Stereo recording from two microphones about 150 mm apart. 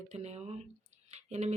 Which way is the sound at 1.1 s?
50° right (ahead or behind).